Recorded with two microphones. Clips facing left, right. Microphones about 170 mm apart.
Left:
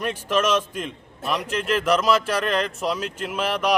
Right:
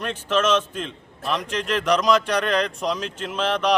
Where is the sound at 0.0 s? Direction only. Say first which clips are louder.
Even; 10° left (ahead or behind).